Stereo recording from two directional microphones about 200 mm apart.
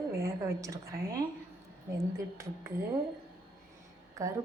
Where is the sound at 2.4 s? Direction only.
15° right (ahead or behind).